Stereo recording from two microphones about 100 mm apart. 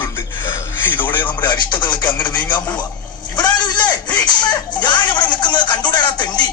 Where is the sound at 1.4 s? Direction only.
50° left (ahead or behind).